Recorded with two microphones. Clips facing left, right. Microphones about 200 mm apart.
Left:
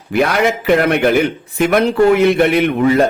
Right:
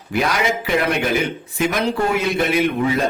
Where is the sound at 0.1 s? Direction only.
60° left (ahead or behind).